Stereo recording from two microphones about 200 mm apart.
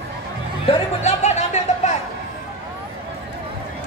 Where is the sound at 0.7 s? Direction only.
35° left (ahead or behind).